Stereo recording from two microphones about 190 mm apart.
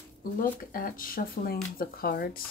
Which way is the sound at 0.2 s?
50° left (ahead or behind).